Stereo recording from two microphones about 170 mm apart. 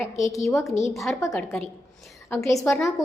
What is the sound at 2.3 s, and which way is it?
Speech, 15° left (ahead or behind).